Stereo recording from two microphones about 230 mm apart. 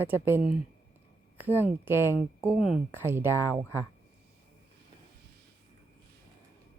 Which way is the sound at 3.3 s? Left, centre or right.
Centre.